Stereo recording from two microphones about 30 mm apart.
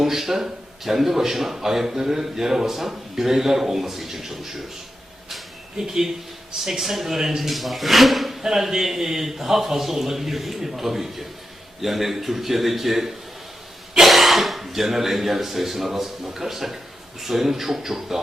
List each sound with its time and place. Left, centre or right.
0.0 s a man's voice: centre
5.7 s a man's voice: centre
7.5 s speech: centre
8.4 s a man's voice: centre